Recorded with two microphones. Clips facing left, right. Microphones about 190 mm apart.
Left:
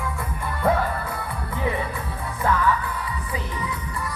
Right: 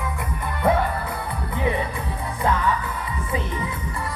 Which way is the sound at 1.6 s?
20° right (ahead or behind).